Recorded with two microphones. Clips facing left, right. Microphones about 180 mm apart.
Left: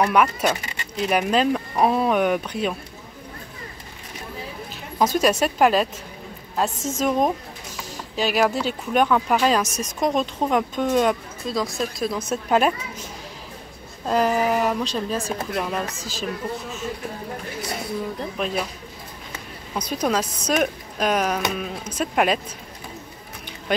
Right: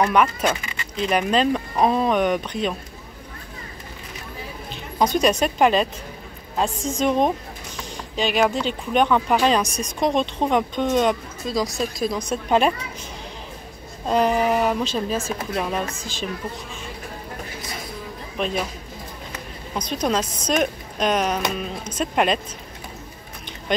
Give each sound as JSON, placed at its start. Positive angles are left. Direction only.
{"t": 0.0, "sound": "speech", "side_deg": 10}
{"t": 4.9, "sound": "speech", "side_deg": 5}
{"t": 14.0, "sound": "speech", "side_deg": 0}
{"t": 18.4, "sound": "speech", "side_deg": 5}
{"t": 19.7, "sound": "speech", "side_deg": 10}